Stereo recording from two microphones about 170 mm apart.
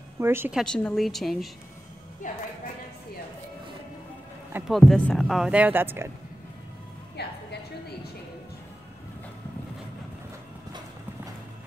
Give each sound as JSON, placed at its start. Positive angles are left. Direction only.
{"t": 0.2, "sound": "a woman's voice", "side_deg": -15}
{"t": 0.6, "sound": "speech", "side_deg": 5}
{"t": 2.2, "sound": "speech", "side_deg": 50}
{"t": 4.6, "sound": "speech", "side_deg": 0}
{"t": 7.2, "sound": "music", "side_deg": 75}